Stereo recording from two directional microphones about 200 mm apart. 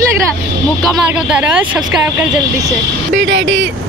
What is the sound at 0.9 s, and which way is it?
Speech, 5° right (ahead or behind).